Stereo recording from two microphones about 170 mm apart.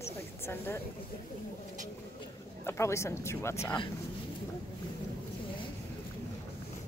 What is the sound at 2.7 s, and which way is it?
Speech, 15° left (ahead or behind).